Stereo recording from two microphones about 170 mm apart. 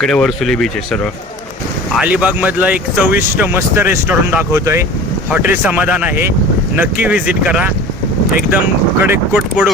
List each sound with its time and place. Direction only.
0.0 s speech: 5° left (ahead or behind)
1.9 s speech: 5° right (ahead or behind)
9.0 s speech: 10° right (ahead or behind)